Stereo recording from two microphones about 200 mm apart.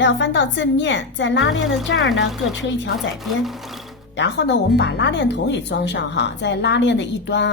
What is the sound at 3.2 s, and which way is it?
Speech, centre (ahead or behind).